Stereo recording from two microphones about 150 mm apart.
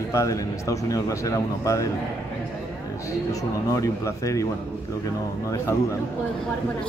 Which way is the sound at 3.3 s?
20° left (ahead or behind).